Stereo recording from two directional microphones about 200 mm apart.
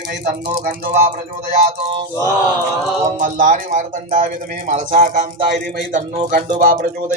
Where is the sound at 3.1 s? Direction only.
40° right (ahead or behind).